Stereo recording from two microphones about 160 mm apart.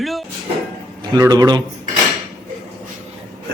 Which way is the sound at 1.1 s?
20° right (ahead or behind).